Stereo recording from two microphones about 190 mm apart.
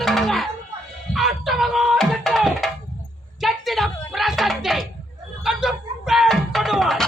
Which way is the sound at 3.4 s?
Centre (ahead or behind).